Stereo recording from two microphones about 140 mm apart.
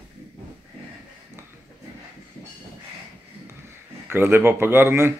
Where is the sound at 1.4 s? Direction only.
20° right (ahead or behind).